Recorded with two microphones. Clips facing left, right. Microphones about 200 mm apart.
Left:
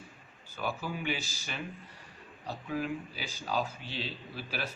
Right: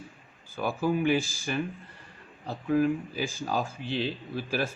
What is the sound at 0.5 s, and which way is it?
A man's voice, 50° right (ahead or behind).